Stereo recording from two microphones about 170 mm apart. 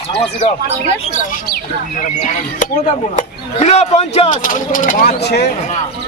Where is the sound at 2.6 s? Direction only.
45° left (ahead or behind); by 5.5 s 70° left (ahead or behind).